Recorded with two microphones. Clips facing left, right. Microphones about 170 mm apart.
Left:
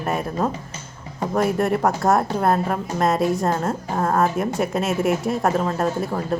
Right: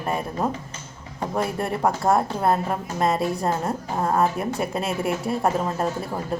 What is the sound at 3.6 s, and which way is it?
Speech, 15° right (ahead or behind).